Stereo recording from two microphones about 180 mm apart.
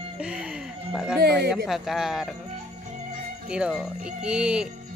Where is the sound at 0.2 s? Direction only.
5° right (ahead or behind).